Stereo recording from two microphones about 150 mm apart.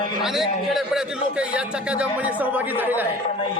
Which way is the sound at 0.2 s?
Centre (ahead or behind).